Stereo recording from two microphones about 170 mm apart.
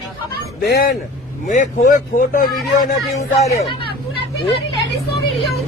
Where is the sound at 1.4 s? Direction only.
50° left (ahead or behind).